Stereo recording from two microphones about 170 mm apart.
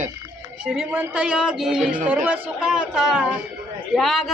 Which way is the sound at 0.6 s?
5° right (ahead or behind).